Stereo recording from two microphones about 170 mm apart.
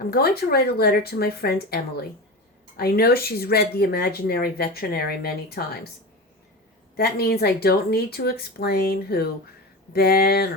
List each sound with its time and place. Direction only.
0.0 s speech: 65° left (ahead or behind)
6.9 s speech: 65° left (ahead or behind)